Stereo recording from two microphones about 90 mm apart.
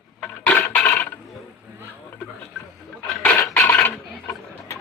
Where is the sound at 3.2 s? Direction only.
20° left (ahead or behind).